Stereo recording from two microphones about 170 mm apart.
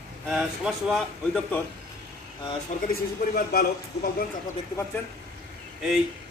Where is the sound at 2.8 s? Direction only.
60° left (ahead or behind).